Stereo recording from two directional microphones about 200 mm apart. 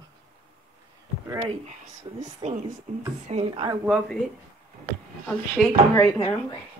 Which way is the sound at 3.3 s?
25° right (ahead or behind).